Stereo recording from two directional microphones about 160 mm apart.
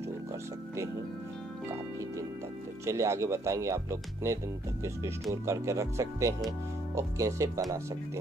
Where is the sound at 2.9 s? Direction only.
20° right (ahead or behind).